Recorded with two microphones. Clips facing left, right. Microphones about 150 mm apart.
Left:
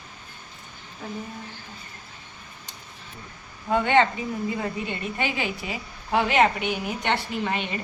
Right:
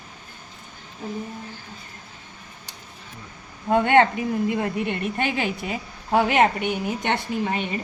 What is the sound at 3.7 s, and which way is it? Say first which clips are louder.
A woman's voice: right 3 dB; 55° right (ahead or behind).